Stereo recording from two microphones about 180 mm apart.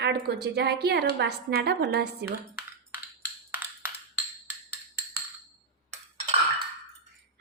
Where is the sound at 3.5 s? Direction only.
10° right (ahead or behind).